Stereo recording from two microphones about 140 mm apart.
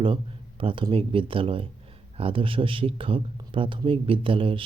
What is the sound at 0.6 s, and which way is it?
Speech, 35° right (ahead or behind).